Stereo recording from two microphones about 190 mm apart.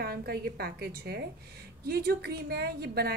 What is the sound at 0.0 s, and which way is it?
A woman's voice, 55° right (ahead or behind).